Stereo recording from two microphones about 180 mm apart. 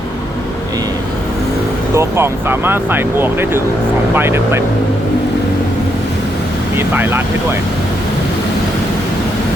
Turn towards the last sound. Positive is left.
turn(degrees=-10)  # may be behind; listen again after turning